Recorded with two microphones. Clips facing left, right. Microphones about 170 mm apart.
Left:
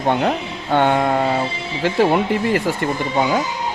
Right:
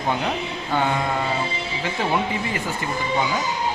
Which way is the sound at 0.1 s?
65° left (ahead or behind).